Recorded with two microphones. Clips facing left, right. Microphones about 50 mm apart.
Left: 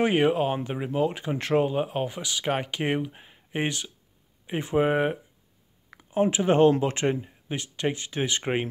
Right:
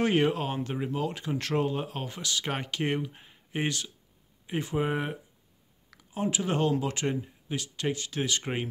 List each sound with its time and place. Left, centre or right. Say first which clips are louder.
0.0 s speech: left 4 dB; centre